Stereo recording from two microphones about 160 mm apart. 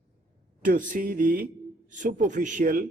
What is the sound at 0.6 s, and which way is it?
A man's voice, 55° right (ahead or behind).